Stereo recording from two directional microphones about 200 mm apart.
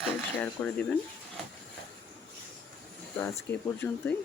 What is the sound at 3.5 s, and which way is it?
Speech, 10° left (ahead or behind).